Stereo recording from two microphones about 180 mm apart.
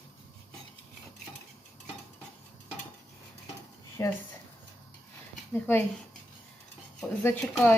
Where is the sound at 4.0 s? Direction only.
15° left (ahead or behind).